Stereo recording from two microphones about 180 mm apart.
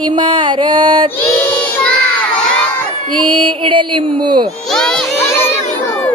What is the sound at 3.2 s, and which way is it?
Speech, 25° right (ahead or behind).